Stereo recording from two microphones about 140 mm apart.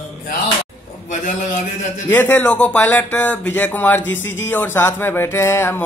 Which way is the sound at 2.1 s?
15° left (ahead or behind).